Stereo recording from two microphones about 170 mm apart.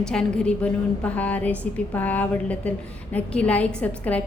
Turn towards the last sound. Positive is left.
turn(degrees=10)  # may be behind; listen again after turning